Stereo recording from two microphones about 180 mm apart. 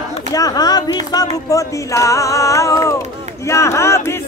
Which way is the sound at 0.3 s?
20° left (ahead or behind).